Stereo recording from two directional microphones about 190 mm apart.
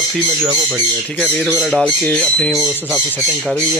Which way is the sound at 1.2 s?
10° left (ahead or behind).